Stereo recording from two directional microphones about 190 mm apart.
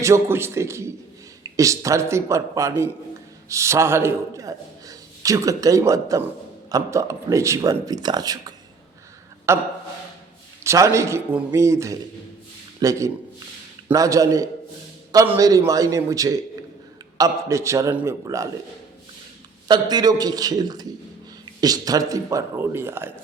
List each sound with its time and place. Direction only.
0.0 s a man's voice: 15° right (ahead or behind)
19.6 s a man's voice: 20° right (ahead or behind)